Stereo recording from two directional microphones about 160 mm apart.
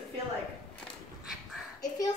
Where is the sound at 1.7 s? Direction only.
20° left (ahead or behind).